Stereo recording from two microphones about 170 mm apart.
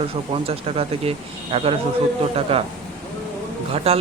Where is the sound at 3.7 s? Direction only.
35° right (ahead or behind).